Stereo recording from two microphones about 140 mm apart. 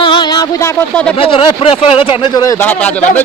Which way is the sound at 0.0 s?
35° left (ahead or behind).